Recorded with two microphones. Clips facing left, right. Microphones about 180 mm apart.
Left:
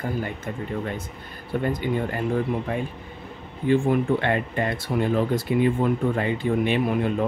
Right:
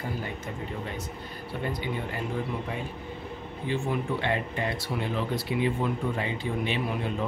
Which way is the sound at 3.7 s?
55° left (ahead or behind).